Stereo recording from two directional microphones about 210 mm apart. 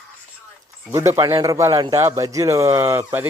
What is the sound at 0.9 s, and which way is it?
Speech, 15° right (ahead or behind).